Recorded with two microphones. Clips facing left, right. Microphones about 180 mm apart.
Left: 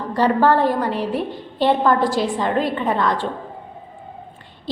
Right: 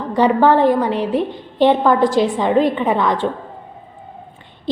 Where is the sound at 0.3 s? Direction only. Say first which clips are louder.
Right 4 dB; 15° right (ahead or behind).